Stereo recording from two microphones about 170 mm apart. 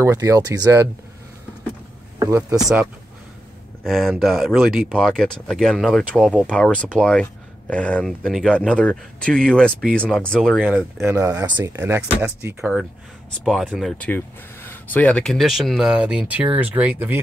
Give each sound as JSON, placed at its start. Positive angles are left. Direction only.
{"t": 0.0, "sound": "speech", "side_deg": -20}
{"t": 2.1, "sound": "speech", "side_deg": -20}
{"t": 3.8, "sound": "speech", "side_deg": 0}
{"t": 10.6, "sound": "speech", "side_deg": -10}